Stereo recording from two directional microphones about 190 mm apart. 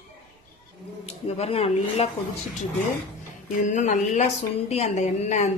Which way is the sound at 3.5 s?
40° left (ahead or behind).